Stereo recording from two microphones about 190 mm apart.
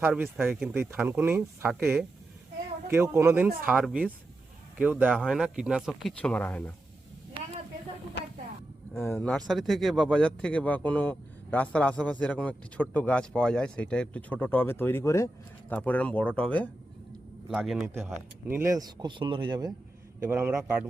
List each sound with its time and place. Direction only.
0.0 s speech: 10° right (ahead or behind); by 6.7 s 10° left (ahead or behind)
9.0 s speech: 10° left (ahead or behind)
18.4 s speech: 15° right (ahead or behind)